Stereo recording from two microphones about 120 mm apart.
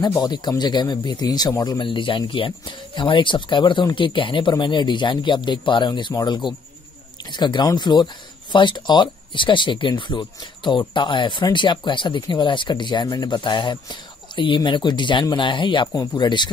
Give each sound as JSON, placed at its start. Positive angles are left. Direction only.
{"t": 0.1, "sound": "speech", "side_deg": 35}